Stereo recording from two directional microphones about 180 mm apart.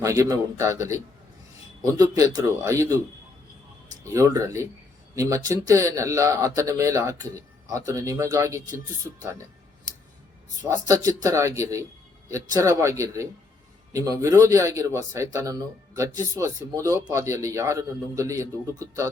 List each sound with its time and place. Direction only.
0.0 s a man's voice: 20° right (ahead or behind)
4.1 s speech: 15° right (ahead or behind)
10.8 s speech: 20° right (ahead or behind)